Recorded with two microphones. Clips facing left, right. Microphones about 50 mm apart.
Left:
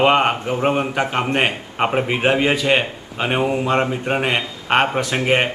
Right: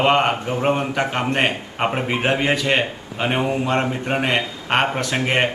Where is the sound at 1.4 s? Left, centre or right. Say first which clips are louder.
Left 1 dB; centre.